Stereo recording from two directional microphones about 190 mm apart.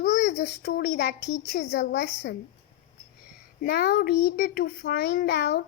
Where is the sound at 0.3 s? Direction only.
60° left (ahead or behind).